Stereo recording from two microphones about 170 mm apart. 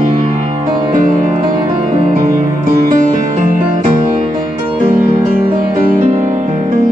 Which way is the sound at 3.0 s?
50° right (ahead or behind).